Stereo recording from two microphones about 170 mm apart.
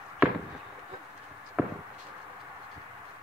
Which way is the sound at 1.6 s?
5° right (ahead or behind).